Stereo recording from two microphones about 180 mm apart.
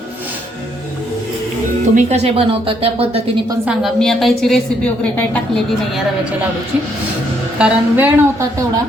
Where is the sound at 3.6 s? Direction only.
Centre (ahead or behind).